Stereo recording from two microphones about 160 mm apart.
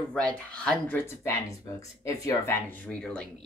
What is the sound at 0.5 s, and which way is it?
Speech, 5° left (ahead or behind).